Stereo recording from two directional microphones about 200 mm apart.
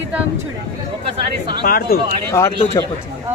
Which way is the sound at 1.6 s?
45° left (ahead or behind).